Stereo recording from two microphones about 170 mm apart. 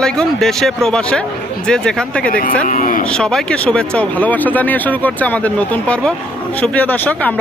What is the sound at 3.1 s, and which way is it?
Speech, 5° left (ahead or behind).